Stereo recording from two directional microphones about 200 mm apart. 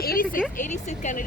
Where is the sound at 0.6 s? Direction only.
40° left (ahead or behind).